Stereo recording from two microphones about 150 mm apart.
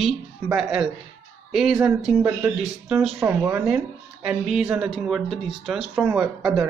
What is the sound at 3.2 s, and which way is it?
Speech, 20° right (ahead or behind).